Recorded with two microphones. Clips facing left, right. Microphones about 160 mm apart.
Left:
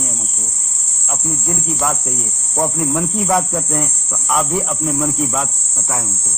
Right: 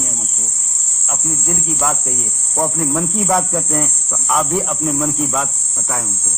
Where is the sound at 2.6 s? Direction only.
Centre (ahead or behind).